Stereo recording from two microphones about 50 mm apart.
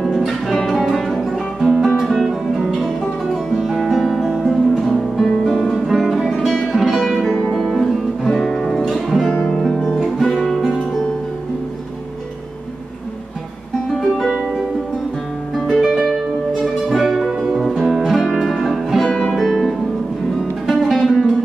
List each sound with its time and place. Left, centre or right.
0.0 s music: centre
0.3 s music: centre
9.3 s guitar: centre
10.3 s music: centre
13.9 s music: centre
15.5 s music: centre